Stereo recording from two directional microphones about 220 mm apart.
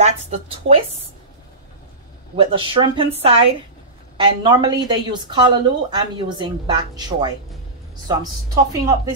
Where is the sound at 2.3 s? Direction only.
25° right (ahead or behind).